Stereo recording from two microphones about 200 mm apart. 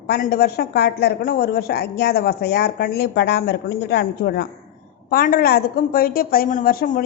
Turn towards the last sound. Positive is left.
turn(degrees=45)  # may be behind; listen again after turning